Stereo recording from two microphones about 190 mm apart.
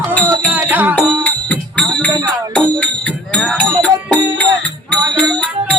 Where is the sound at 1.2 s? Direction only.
5° left (ahead or behind).